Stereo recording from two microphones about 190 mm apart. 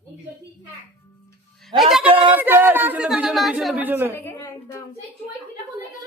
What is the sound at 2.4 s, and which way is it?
Speech, 10° right (ahead or behind).